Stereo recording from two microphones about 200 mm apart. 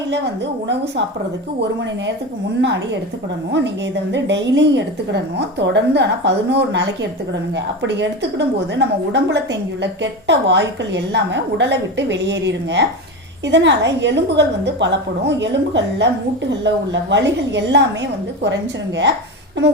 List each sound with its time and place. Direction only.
2.6 s a woman's voice: 60° right (ahead or behind)
4.1 s a woman's voice: 60° right (ahead or behind)